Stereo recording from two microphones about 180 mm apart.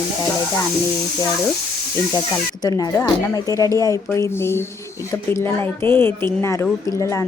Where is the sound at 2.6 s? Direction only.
20° left (ahead or behind).